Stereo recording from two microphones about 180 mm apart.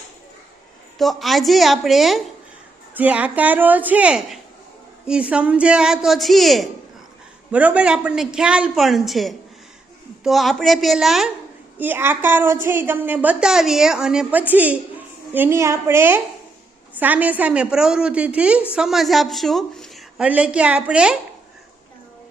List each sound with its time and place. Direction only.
0.9 s a woman's voice: centre (ahead or behind)